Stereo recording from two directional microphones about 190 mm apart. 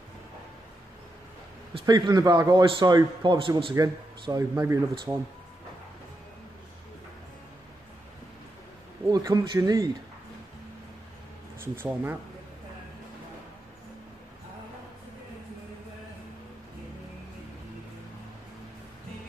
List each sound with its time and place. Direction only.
1.7 s a man's voice: 25° right (ahead or behind)
9.0 s a man's voice: 20° right (ahead or behind)
11.6 s speech: 10° right (ahead or behind)